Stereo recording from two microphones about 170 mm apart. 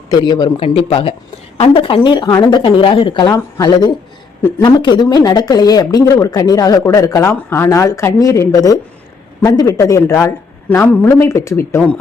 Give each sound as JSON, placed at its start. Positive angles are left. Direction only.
{"t": 0.1, "sound": "a man's voice", "side_deg": 25}